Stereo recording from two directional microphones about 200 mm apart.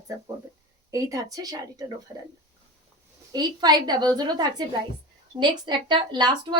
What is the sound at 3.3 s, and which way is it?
A woman's voice, 20° right (ahead or behind).